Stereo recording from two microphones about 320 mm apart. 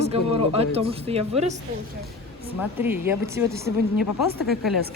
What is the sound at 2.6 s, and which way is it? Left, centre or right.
Speech, centre.